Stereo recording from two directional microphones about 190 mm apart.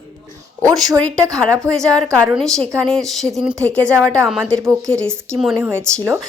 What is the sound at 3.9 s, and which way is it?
Speech, 15° right (ahead or behind).